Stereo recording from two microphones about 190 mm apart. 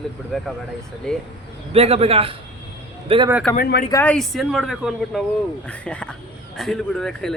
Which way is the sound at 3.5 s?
50° left (ahead or behind).